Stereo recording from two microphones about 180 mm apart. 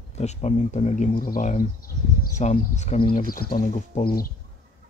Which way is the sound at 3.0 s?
55° left (ahead or behind).